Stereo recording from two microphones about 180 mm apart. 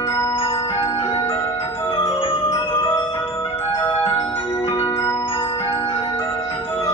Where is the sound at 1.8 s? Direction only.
30° left (ahead or behind).